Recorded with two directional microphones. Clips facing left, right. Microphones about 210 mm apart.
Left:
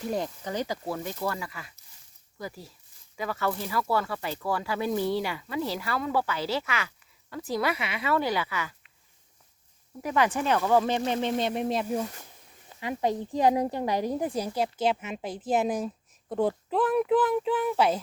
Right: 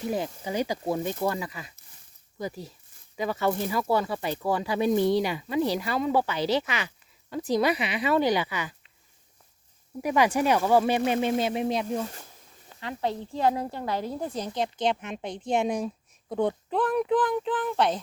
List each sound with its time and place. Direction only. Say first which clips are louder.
0.0 s speech: right 1 dB; 5° right (ahead or behind)
10.0 s speech: right 3 dB; 15° right (ahead or behind); by 18.0 s 5° left (ahead or behind)